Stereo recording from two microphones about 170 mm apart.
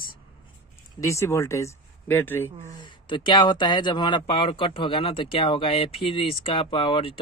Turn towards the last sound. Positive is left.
turn(degrees=30)  # may be behind; listen again after turning